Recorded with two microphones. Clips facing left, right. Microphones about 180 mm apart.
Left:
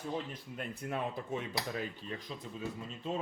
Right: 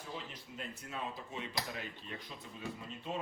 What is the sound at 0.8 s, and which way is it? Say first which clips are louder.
Speech: left 8 dB; 60° left (ahead or behind).